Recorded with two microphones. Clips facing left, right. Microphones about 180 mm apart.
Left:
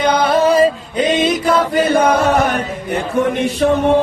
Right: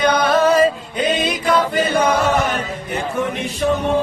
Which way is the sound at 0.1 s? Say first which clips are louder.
Left 2 dB; 30° left (ahead or behind).